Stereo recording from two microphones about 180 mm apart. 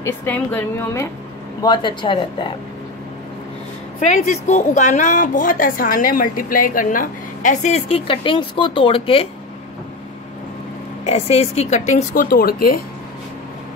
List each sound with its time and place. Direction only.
0.0 s a woman's voice: 10° left (ahead or behind)
1.6 s speech: 25° left (ahead or behind)
4.0 s speech: 40° left (ahead or behind)
11.1 s speech: 35° left (ahead or behind); by 12.8 s 55° left (ahead or behind)